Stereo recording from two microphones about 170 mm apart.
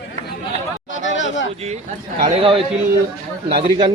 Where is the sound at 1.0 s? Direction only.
90° left.